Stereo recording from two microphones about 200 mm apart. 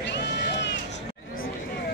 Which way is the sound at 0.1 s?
60° left (ahead or behind).